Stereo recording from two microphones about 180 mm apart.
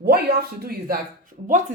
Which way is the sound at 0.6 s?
55° right (ahead or behind).